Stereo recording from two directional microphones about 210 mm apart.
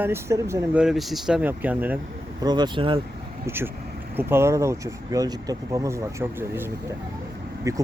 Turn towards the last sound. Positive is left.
turn(degrees=-15)  # may be behind; listen again after turning